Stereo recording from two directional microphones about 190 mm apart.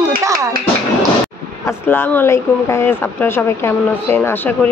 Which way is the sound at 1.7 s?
10° left (ahead or behind).